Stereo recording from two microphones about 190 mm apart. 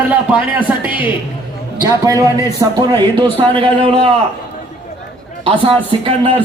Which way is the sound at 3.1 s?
30° right (ahead or behind).